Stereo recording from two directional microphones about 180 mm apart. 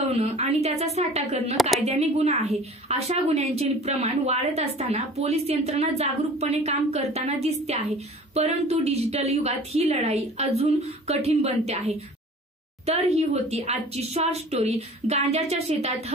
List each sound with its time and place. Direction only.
0.1 s a woman's voice: 35° right (ahead or behind)